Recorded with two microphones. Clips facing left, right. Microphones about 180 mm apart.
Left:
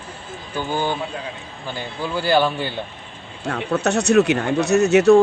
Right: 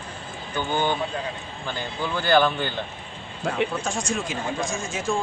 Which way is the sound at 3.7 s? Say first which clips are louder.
Left 10 dB; 70° left (ahead or behind).